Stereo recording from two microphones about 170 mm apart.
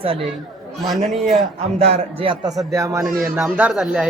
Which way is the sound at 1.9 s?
30° right (ahead or behind).